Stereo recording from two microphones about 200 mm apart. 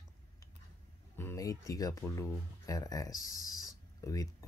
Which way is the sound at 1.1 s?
15° left (ahead or behind).